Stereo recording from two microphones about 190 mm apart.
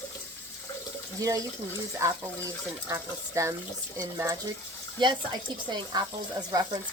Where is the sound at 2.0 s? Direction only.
15° right (ahead or behind).